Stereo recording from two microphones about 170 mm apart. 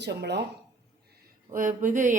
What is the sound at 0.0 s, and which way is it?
Speech, 80° right.